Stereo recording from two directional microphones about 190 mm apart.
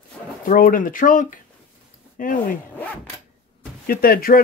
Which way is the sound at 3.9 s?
50° left (ahead or behind).